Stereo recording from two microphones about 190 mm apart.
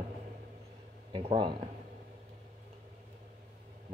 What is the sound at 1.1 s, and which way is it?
Speech, 25° right (ahead or behind).